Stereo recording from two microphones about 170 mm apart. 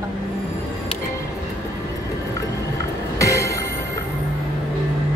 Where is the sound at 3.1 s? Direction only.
20° left (ahead or behind).